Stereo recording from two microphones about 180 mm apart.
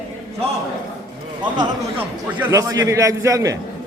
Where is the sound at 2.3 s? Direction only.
15° right (ahead or behind).